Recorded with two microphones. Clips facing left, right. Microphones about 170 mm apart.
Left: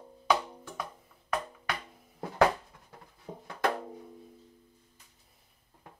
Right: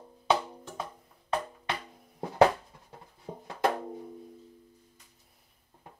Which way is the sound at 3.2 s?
25° right (ahead or behind).